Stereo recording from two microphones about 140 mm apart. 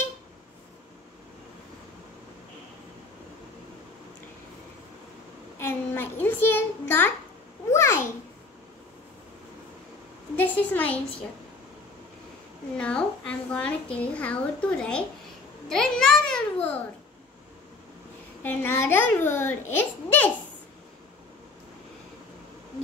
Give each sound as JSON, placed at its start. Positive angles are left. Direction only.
{"t": 5.6, "sound": "a woman's voice", "side_deg": 15}
{"t": 7.7, "sound": "babbling", "side_deg": 20}
{"t": 10.3, "sound": "a woman's voice", "side_deg": 10}
{"t": 12.7, "sound": "a woman's voice", "side_deg": 5}
{"t": 18.4, "sound": "a woman's voice", "side_deg": 15}